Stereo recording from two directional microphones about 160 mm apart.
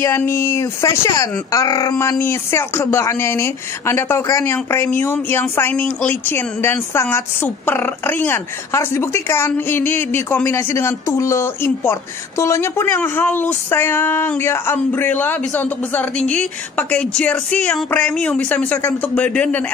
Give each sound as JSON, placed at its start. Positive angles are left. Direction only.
{"t": 0.0, "sound": "speech", "side_deg": 15}